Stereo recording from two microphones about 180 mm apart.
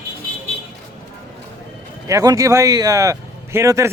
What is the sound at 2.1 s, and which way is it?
Speech, 20° right (ahead or behind).